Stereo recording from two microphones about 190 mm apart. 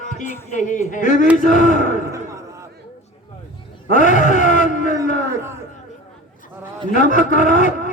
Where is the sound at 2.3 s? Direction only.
15° right (ahead or behind).